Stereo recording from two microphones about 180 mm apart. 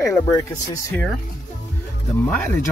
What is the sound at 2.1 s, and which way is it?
Speech, 10° left (ahead or behind).